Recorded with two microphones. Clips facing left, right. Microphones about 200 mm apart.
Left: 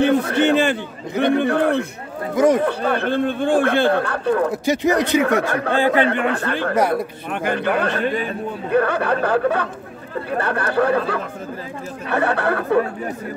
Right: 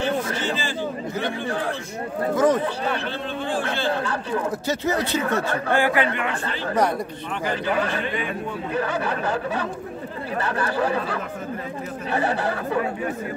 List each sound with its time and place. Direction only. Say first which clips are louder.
0.0 s a man's voice: left 8 dB; 60° left (ahead or behind)
2.3 s speech: left 4 dB; 10° left (ahead or behind)
2.6 s a man's voice: left 6 dB; 55° left (ahead or behind)
4.6 s speech: left 6 dB; 15° left (ahead or behind)
5.2 s speech: left 5 dB; 70° left (ahead or behind)
5.7 s speech: left 3 dB; 20° left (ahead or behind)
6.2 s a man's voice: left 7 dB; 60° left (ahead or behind)
6.7 s speech: left 2 dB; 5° left (ahead or behind)
7.2 s a man's voice: left 4 dB; 55° left (ahead or behind)